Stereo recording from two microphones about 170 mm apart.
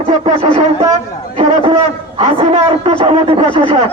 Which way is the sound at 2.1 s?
35° right (ahead or behind).